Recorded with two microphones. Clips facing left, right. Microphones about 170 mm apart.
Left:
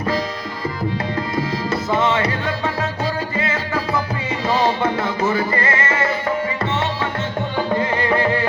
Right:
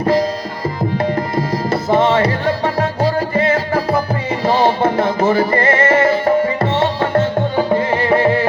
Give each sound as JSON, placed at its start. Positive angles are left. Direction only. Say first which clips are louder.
{"t": 0.0, "sound": "tabla", "louder": "right 7 dB", "side_deg": -35}
{"t": 1.4, "sound": "music", "louder": "right 4 dB", "side_deg": -35}